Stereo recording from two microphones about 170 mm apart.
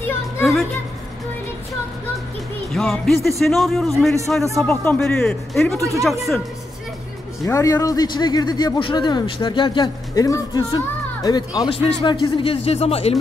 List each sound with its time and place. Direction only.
0.4 s music: centre (ahead or behind)
2.7 s a man's voice: centre (ahead or behind)
5.8 s speech: 20° right (ahead or behind)
7.4 s a man's voice: 20° left (ahead or behind); by 13.2 s 35° left (ahead or behind)